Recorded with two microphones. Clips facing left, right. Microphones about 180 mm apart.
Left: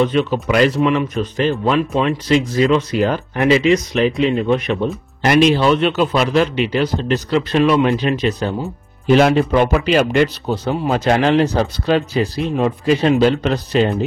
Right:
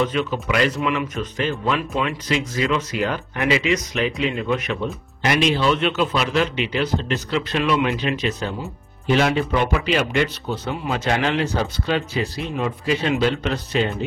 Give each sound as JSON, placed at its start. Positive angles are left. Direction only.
{"t": 0.0, "sound": "a man's voice", "side_deg": 35}
{"t": 4.8, "sound": "a man's voice", "side_deg": 45}